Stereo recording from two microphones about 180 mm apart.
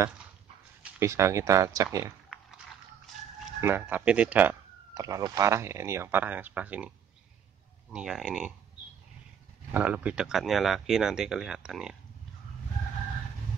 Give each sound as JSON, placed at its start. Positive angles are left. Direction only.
{"t": 0.8, "sound": "speech", "side_deg": -15}
{"t": 3.6, "sound": "speech", "side_deg": -10}
{"t": 7.9, "sound": "speech", "side_deg": -5}
{"t": 9.7, "sound": "speech", "side_deg": -10}